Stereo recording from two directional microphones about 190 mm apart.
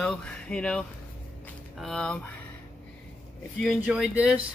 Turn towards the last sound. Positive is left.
turn(degrees=-5)  # may be behind; listen again after turning